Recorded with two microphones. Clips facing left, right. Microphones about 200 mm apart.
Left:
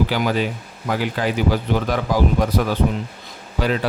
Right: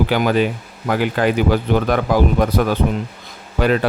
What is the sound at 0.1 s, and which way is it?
Speech, 55° right (ahead or behind).